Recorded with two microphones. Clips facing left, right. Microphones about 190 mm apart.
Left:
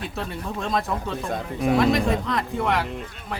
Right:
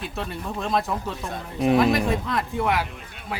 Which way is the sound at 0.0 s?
Centre (ahead or behind).